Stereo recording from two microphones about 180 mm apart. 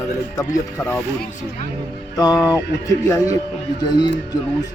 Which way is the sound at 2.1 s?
20° left (ahead or behind).